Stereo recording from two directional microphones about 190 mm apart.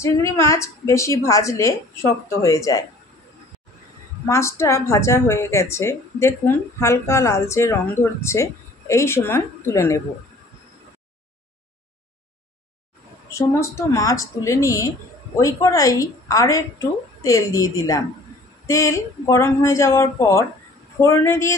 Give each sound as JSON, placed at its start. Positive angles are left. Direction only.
{"t": 0.0, "sound": "a woman's voice", "side_deg": 15}
{"t": 4.3, "sound": "a woman's voice", "side_deg": 15}
{"t": 13.3, "sound": "a woman's voice", "side_deg": 15}